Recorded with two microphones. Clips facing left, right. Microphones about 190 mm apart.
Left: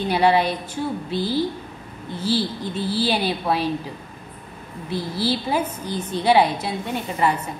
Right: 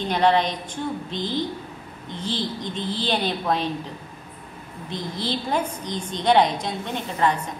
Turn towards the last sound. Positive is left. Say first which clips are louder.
# left 1 dB
turn(degrees=10)  # may be behind; listen again after turning